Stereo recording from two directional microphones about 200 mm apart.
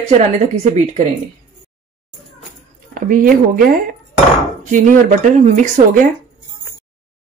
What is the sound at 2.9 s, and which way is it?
Speech, 45° right (ahead or behind).